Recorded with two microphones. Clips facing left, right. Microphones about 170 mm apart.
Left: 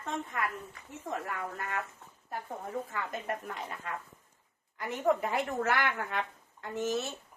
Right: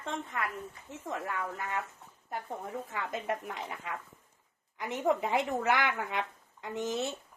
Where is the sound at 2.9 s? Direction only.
20° right (ahead or behind).